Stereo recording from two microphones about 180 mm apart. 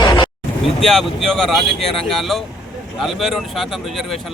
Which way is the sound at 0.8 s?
Centre (ahead or behind).